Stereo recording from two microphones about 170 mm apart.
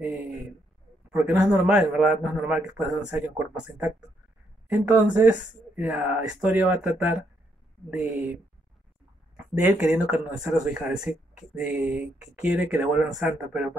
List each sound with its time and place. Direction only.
1.1 s a man's voice: 15° right (ahead or behind)
9.6 s speech: 10° right (ahead or behind)